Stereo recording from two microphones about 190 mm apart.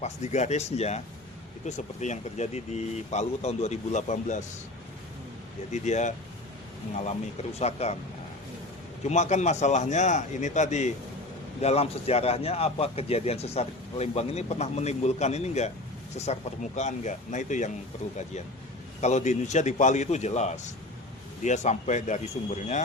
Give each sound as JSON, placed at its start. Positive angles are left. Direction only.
{"t": 0.0, "sound": "a man's voice", "side_deg": 35}
{"t": 5.7, "sound": "a man's voice", "side_deg": 40}
{"t": 7.6, "sound": "a man's voice", "side_deg": 35}
{"t": 9.0, "sound": "a man's voice", "side_deg": 35}
{"t": 19.0, "sound": "a man's voice", "side_deg": 40}